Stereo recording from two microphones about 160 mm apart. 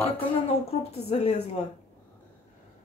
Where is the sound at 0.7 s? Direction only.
40° left (ahead or behind).